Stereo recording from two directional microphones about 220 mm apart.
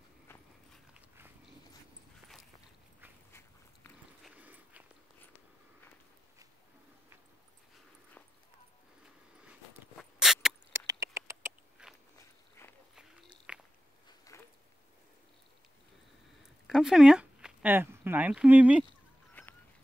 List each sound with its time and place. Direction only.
0.9 s dog: 10° right (ahead or behind)
4.2 s dog: 5° right (ahead or behind)
9.4 s a sound: 5° right (ahead or behind)
10.9 s rodents: 15° right (ahead or behind)
13.5 s walk: 5° right (ahead or behind)
14.0 s a sound: 15° left (ahead or behind)
16.6 s speech: centre (ahead or behind)
19.4 s goose: 5° left (ahead or behind)